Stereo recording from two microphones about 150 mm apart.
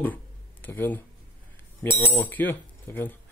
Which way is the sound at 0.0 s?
10° left (ahead or behind).